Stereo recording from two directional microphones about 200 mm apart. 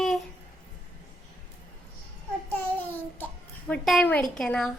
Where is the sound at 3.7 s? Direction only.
5° left (ahead or behind).